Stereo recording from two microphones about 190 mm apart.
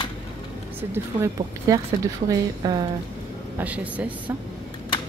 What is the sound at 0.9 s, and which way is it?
A woman's voice, 15° right (ahead or behind).